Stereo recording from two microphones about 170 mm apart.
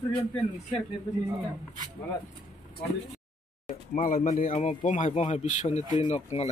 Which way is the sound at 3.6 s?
50° left (ahead or behind).